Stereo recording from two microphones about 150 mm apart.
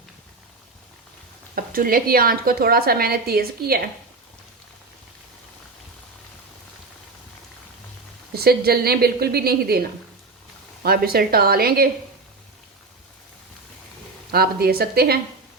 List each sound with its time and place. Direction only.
1.5 s a woman's voice: 75° right (ahead or behind); by 3.8 s 90° right
8.4 s a woman's voice: 90° right
10.8 s a woman's voice: 90° right
14.3 s a woman's voice: 90° right